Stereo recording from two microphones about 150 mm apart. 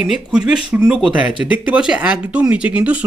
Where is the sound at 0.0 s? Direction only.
5° right (ahead or behind).